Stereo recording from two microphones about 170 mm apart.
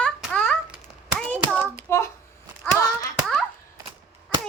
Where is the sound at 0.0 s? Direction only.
5° left (ahead or behind).